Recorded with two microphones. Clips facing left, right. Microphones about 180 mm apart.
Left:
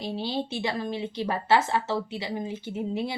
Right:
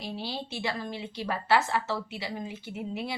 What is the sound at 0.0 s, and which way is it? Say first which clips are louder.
Speech: left 6 dB; 20° left (ahead or behind).